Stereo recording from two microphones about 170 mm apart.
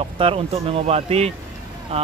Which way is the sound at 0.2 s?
35° right (ahead or behind).